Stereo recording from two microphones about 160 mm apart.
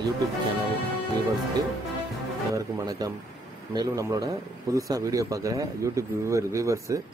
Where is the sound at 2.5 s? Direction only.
20° right (ahead or behind).